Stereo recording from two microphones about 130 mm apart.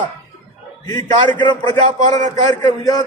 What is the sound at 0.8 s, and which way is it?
A man's voice, 35° left (ahead or behind).